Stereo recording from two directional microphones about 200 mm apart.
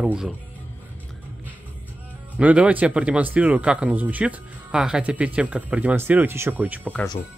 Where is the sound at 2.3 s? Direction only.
5° right (ahead or behind).